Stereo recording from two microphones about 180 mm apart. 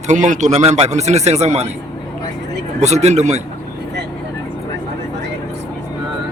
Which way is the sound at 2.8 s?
40° right (ahead or behind).